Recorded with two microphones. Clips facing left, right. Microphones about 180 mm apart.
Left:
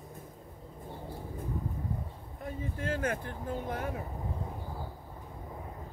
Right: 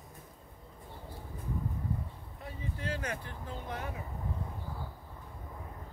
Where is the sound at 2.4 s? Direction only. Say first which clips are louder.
Left 4 dB; 50° left (ahead or behind).